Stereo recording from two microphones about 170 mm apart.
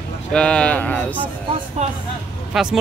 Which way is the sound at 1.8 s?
40° right (ahead or behind).